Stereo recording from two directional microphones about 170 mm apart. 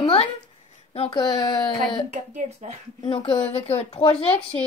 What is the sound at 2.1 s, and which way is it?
Speech, 45° right (ahead or behind).